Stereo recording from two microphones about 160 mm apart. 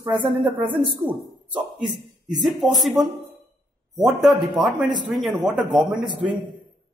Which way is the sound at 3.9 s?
Centre (ahead or behind).